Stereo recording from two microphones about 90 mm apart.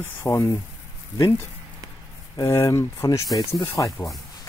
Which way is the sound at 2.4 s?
35° left (ahead or behind).